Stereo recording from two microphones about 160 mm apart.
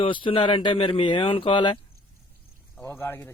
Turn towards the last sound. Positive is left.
turn(degrees=15)  # may be behind; listen again after turning